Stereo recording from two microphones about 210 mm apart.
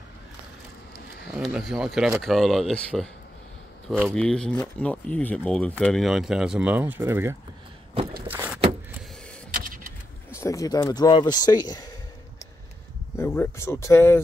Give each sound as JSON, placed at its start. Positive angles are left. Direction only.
{"t": 1.3, "sound": "speech", "side_deg": -5}
{"t": 4.1, "sound": "speech", "side_deg": 5}
{"t": 8.3, "sound": "a sound", "side_deg": -10}
{"t": 9.5, "sound": "vehicle", "side_deg": -45}
{"t": 10.3, "sound": "speech", "side_deg": 15}
{"t": 13.1, "sound": "speech", "side_deg": 10}